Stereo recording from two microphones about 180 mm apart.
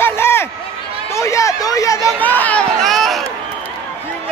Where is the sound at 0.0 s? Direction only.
15° left (ahead or behind).